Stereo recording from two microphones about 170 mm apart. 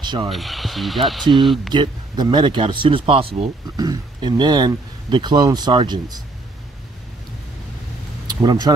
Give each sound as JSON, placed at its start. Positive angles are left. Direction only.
{"t": 0.0, "sound": "speech", "side_deg": -25}
{"t": 0.3, "sound": "speech", "side_deg": 0}
{"t": 1.7, "sound": "speech", "side_deg": -25}
{"t": 8.3, "sound": "speech", "side_deg": -25}